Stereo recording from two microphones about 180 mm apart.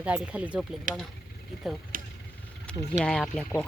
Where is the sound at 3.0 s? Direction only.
5° left (ahead or behind).